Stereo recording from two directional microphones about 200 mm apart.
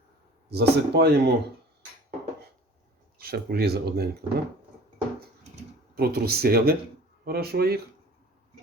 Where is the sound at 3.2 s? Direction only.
50° right (ahead or behind).